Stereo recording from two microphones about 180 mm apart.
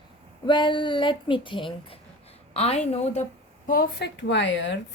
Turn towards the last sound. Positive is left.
turn(degrees=85)